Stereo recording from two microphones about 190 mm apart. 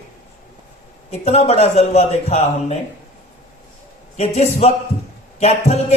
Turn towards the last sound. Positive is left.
turn(degrees=35)  # may be behind; listen again after turning